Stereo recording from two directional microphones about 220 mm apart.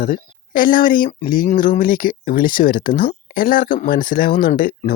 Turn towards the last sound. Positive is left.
turn(degrees=40)  # may be behind; listen again after turning